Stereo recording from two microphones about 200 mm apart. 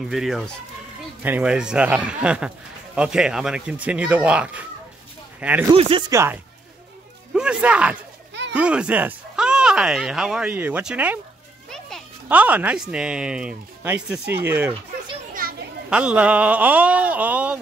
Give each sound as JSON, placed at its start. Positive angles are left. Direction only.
{"t": 0.1, "sound": "speech", "side_deg": 0}
{"t": 5.7, "sound": "speech", "side_deg": -25}
{"t": 6.1, "sound": "speech", "side_deg": -10}
{"t": 8.3, "sound": "a sound", "side_deg": -60}
{"t": 8.5, "sound": "speech", "side_deg": -5}
{"t": 12.3, "sound": "speech", "side_deg": -10}
{"t": 15.4, "sound": "children playing", "side_deg": -50}
{"t": 15.9, "sound": "speech", "side_deg": -5}